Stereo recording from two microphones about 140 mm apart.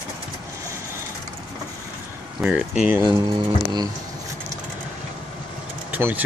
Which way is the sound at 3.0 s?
30° right (ahead or behind).